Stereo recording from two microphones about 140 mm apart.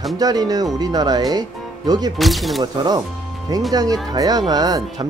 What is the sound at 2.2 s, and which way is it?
Speech, centre (ahead or behind).